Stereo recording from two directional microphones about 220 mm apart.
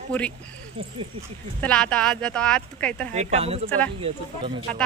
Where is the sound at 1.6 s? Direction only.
5° left (ahead or behind).